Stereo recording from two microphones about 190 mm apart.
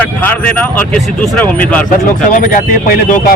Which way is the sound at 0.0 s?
10° left (ahead or behind).